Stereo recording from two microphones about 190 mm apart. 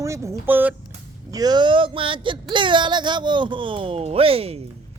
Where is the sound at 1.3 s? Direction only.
20° right (ahead or behind).